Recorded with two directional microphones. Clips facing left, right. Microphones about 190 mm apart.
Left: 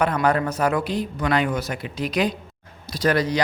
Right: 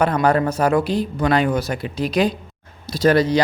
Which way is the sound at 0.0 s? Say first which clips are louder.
Right 3 dB; 30° right (ahead or behind).